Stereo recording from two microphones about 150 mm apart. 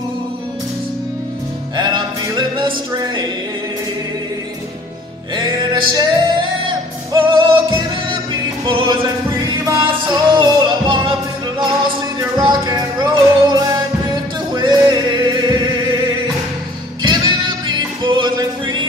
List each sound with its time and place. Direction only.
1.8 s music: 30° right (ahead or behind)
5.3 s music: 30° right (ahead or behind)
17.0 s music: 30° right (ahead or behind)